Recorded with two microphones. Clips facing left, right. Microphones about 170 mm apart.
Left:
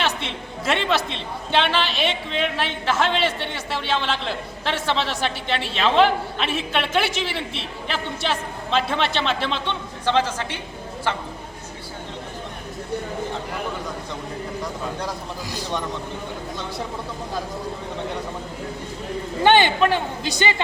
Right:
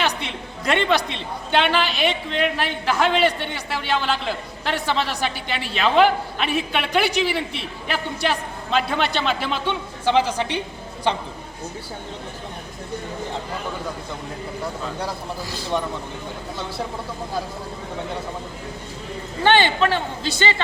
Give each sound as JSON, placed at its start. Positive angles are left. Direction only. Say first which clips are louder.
{"t": 0.0, "sound": "a man's voice", "louder": "right 1 dB", "side_deg": 0}
{"t": 19.4, "sound": "a man's voice", "louder": "left 1 dB", "side_deg": 15}